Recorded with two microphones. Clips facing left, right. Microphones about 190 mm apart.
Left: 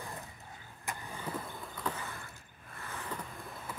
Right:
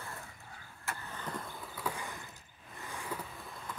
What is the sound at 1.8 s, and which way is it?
Vehicle, 5° right (ahead or behind).